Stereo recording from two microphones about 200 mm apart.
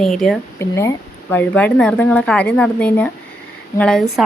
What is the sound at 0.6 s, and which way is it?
A woman's voice, 15° left (ahead or behind).